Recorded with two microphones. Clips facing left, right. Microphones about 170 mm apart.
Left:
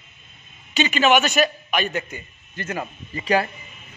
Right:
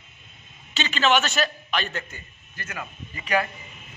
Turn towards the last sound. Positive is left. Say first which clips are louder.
# left 4 dB
turn(degrees=30)  # may be behind; listen again after turning